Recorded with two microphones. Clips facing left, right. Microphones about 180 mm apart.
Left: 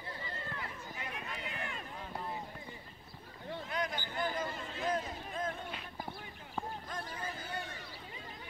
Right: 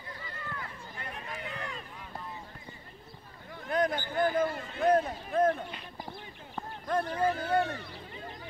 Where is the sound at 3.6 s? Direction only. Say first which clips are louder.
Right 11 dB; 50° right (ahead or behind).